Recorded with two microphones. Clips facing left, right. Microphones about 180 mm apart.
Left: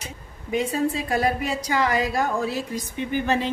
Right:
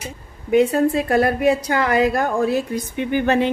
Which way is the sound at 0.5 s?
60° right (ahead or behind).